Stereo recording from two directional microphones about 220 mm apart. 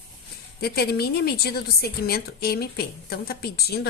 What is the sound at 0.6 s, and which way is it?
A woman's voice, 45° left (ahead or behind).